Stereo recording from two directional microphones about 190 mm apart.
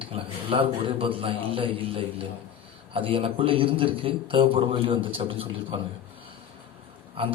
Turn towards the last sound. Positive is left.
turn(degrees=-30)  # may be behind; listen again after turning